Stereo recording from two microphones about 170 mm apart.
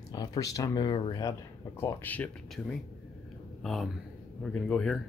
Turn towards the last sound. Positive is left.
turn(degrees=5)  # may be behind; listen again after turning